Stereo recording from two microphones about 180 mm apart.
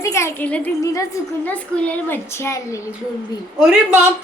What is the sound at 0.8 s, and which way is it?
A woman's voice, 20° left (ahead or behind).